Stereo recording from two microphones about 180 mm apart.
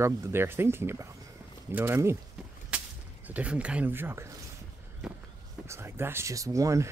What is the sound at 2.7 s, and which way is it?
Whip, 5° right (ahead or behind).